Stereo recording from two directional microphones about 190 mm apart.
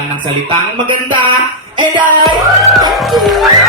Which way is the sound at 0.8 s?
25° right (ahead or behind).